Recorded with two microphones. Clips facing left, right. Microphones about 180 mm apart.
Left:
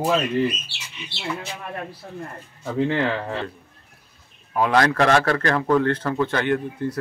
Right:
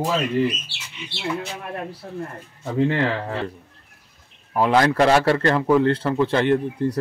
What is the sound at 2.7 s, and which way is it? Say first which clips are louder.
Speech: right 1 dB; 5° right (ahead or behind).